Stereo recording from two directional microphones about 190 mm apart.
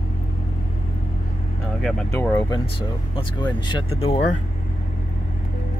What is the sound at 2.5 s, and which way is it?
Speech, 25° left (ahead or behind).